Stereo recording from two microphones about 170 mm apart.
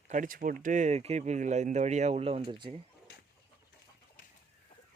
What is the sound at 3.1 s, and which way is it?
Vehicle, 65° left (ahead or behind).